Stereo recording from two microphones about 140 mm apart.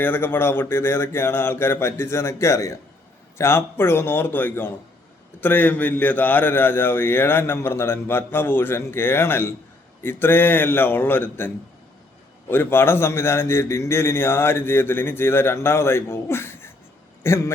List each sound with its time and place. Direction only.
0.0 s a man's voice: 15° left (ahead or behind)